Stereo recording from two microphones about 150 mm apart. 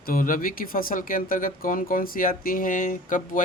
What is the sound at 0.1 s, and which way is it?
Speech, 65° left (ahead or behind).